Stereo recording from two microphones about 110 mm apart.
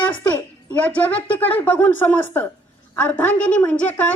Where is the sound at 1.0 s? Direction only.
15° left (ahead or behind).